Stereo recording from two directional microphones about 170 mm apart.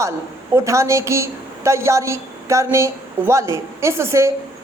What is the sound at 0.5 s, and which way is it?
A woman's voice, 15° right (ahead or behind).